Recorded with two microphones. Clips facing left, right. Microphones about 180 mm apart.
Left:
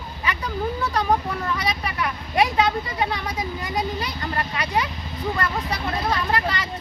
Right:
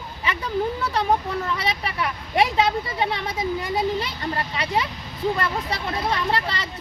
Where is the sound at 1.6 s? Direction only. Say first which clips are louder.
Even; 25° right (ahead or behind).